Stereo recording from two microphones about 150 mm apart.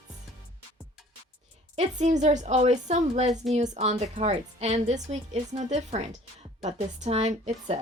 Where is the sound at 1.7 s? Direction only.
50° right (ahead or behind).